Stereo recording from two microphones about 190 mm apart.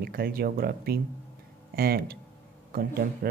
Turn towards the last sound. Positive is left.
turn(degrees=-50)  # may be behind; listen again after turning